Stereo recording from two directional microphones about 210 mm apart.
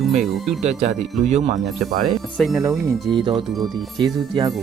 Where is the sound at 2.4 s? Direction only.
Centre (ahead or behind).